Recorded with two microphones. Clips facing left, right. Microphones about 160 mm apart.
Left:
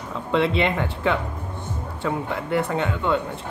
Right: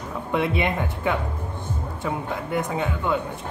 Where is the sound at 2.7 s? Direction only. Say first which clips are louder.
Left 2 dB; 5° right (ahead or behind).